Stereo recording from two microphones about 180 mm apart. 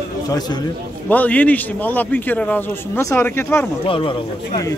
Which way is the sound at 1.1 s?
10° left (ahead or behind).